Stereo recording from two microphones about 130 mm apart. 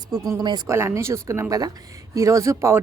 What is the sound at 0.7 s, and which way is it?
Speech, 20° right (ahead or behind).